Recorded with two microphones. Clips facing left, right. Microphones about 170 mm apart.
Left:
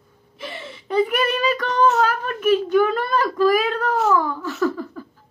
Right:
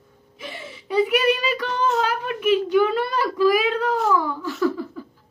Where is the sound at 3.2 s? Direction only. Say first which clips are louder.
Left 1 dB; 10° right (ahead or behind).